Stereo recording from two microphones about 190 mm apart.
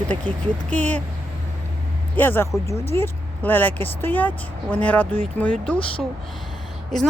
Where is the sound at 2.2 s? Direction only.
10° left (ahead or behind).